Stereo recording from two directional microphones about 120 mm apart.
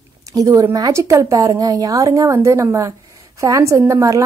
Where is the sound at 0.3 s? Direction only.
30° right (ahead or behind).